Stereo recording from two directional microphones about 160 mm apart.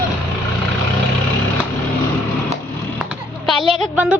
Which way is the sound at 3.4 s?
Centre (ahead or behind).